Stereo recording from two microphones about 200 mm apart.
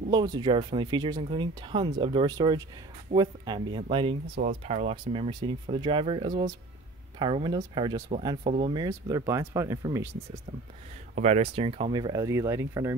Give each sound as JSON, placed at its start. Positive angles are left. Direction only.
{"t": 0.1, "sound": "speech", "side_deg": -20}
{"t": 11.1, "sound": "speech", "side_deg": -35}